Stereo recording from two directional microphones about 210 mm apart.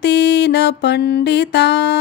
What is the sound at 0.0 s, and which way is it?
Music, 55° left (ahead or behind).